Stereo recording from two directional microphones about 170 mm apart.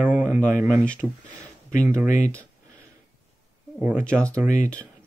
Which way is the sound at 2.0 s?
45° left (ahead or behind).